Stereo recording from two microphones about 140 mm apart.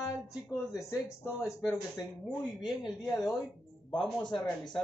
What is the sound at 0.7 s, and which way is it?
Speech, 20° left (ahead or behind).